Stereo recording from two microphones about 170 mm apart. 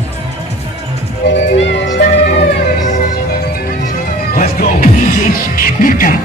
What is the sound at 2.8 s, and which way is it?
Music, 50° left (ahead or behind).